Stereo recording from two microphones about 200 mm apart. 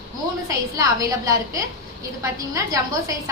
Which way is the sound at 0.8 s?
15° right (ahead or behind).